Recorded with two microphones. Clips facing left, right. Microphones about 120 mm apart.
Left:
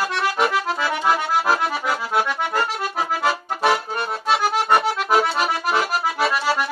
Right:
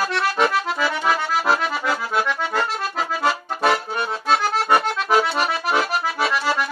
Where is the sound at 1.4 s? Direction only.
5° left (ahead or behind).